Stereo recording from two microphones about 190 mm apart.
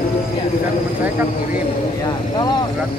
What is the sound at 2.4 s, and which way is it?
Speech, 20° left (ahead or behind).